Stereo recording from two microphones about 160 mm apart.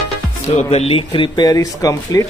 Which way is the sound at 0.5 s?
40° left (ahead or behind).